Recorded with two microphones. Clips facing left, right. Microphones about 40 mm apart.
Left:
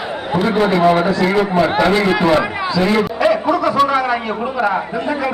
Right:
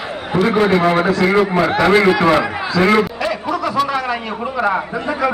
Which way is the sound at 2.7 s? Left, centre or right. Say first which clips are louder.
Right 3 dB; right.